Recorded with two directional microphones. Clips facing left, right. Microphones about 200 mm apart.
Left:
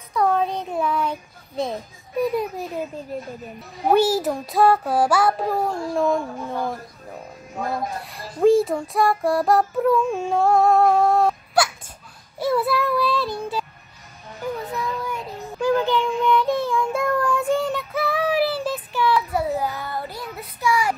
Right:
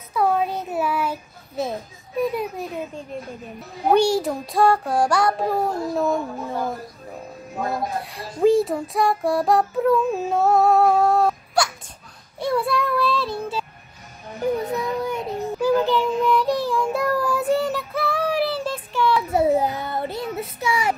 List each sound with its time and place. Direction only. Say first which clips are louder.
0.1 s child singing: even; 5° right (ahead or behind)
8.0 s child singing: left 1 dB; centre (ahead or behind)
14.6 s a sound: right 4 dB; 20° right (ahead or behind)
15.6 s child singing: even; 5° right (ahead or behind)
19.1 s child singing: right 4 dB; 25° right (ahead or behind)